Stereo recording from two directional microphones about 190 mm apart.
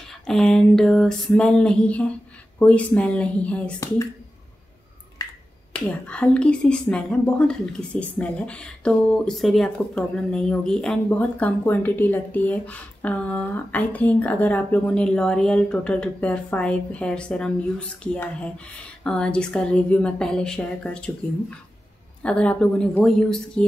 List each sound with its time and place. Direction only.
0.3 s a woman's voice: 5° left (ahead or behind)
5.2 s finger snapping: 20° left (ahead or behind)
5.9 s a woman's voice: 5° left (ahead or behind)
22.2 s a woman's voice: 5° left (ahead or behind)